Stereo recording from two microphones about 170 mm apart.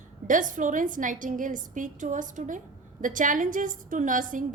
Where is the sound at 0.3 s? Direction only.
50° right (ahead or behind).